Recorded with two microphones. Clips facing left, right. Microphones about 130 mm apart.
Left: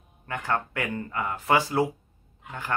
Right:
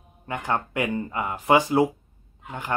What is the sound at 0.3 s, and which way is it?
Speech, 20° right (ahead or behind).